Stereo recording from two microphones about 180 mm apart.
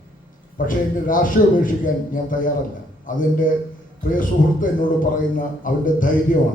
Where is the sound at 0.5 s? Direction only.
50° left (ahead or behind).